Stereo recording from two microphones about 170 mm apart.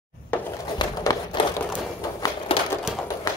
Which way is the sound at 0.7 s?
25° left (ahead or behind).